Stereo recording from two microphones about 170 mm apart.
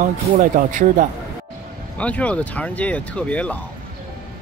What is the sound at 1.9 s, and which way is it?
Speech, 10° left (ahead or behind).